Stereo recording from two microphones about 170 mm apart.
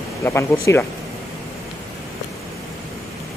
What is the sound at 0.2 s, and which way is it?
Speech, 15° left (ahead or behind).